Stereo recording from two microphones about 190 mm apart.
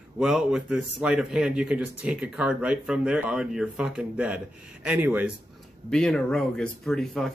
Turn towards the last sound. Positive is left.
turn(degrees=0)  # may be behind; listen again after turning